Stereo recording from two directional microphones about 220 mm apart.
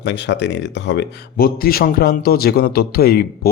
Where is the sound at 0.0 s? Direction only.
55° left (ahead or behind).